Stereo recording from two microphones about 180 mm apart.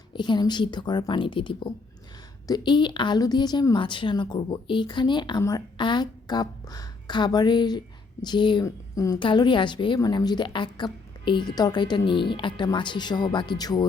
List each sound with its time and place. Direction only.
0.1 s a woman's voice: 25° left (ahead or behind)